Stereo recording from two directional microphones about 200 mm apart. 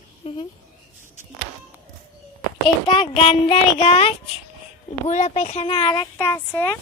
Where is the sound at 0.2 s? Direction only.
30° left (ahead or behind).